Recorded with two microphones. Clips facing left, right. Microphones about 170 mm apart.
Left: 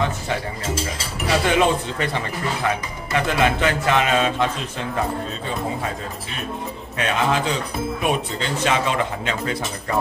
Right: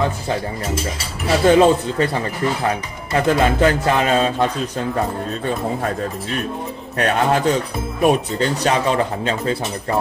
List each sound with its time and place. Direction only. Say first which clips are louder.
1.5 s speech: right 9 dB; 35° right (ahead or behind)
7.0 s a man's voice: right 4 dB; 45° right (ahead or behind)